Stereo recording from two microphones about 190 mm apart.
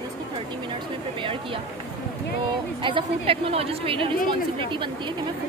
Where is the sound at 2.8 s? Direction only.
25° right (ahead or behind).